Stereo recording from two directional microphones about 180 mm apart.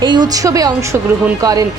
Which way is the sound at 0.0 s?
25° right (ahead or behind).